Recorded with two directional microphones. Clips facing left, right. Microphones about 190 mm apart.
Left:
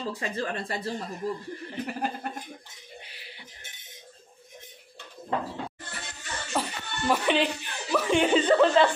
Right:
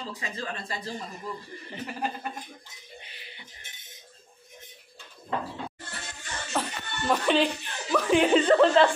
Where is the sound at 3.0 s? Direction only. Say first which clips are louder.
Left 1 dB; 5° left (ahead or behind).